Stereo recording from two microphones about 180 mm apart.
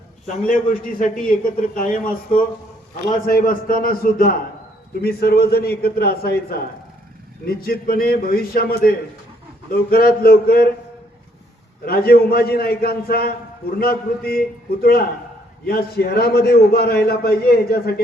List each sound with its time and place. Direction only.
0.4 s a man's voice: 50° left (ahead or behind)
3.2 s a man's voice: 50° left (ahead or behind)
11.9 s a man's voice: 60° left (ahead or behind)